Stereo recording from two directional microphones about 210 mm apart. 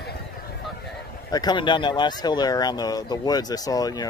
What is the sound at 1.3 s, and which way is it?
Speech, 20° left (ahead or behind).